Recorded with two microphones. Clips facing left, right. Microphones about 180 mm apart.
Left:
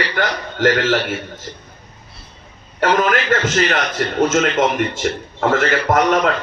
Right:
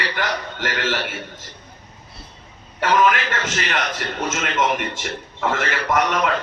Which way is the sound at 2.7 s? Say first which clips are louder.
Left 2 dB; 45° left (ahead or behind).